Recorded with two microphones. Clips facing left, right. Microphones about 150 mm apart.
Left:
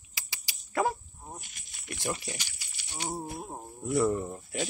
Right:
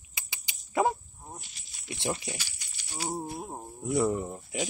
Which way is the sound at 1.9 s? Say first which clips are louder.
Right 2 dB; 20° right (ahead or behind).